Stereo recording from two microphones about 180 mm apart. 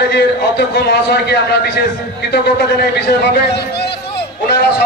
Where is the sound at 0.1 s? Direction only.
70° left (ahead or behind).